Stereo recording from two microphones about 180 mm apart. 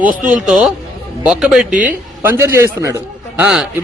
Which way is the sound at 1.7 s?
45° right (ahead or behind).